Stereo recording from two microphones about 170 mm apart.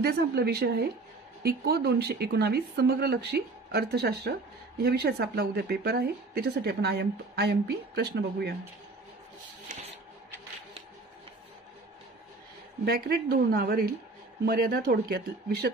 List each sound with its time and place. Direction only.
0.0 s speech: 70° right (ahead or behind)
12.8 s speech: 65° right (ahead or behind)